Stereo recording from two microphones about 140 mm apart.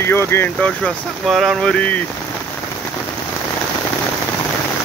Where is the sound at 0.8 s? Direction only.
Centre (ahead or behind).